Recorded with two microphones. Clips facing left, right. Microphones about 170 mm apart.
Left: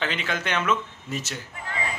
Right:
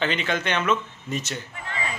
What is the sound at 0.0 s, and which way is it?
Speech, 5° left (ahead or behind).